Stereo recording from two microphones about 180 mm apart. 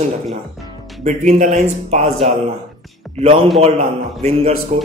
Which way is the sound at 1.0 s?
40° right (ahead or behind).